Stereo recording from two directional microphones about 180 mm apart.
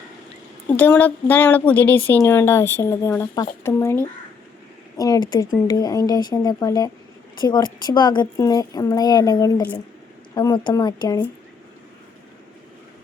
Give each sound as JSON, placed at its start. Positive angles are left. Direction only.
{"t": 0.7, "sound": "a woman's voice", "side_deg": 10}